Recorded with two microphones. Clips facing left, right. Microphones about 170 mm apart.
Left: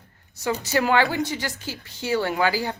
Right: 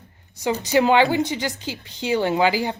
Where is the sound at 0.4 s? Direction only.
15° right (ahead or behind).